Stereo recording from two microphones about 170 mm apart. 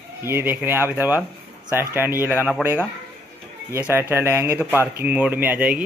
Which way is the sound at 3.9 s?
15° right (ahead or behind).